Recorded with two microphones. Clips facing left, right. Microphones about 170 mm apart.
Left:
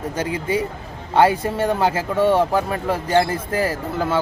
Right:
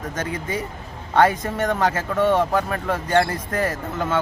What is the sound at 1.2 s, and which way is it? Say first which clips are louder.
Speech: left 2 dB; 30° left (ahead or behind).